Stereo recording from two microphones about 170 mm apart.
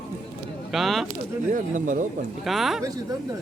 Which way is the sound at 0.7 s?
Centre (ahead or behind).